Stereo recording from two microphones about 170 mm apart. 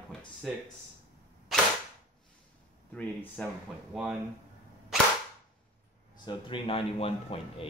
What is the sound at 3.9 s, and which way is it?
Speech, 5° right (ahead or behind).